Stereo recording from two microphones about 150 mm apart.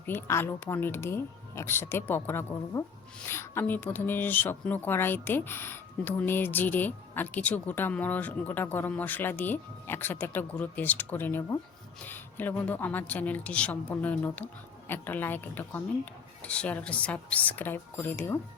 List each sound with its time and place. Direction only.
0.0 s speech: 15° left (ahead or behind)